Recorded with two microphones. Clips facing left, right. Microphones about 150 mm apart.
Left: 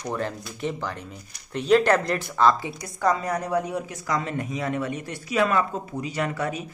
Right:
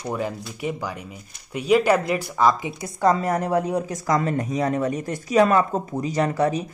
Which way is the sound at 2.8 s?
25° right (ahead or behind).